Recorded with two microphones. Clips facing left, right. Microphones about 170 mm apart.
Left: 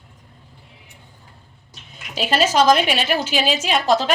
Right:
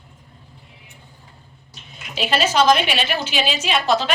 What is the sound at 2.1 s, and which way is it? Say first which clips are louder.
A woman's voice: left 2 dB; 40° left (ahead or behind).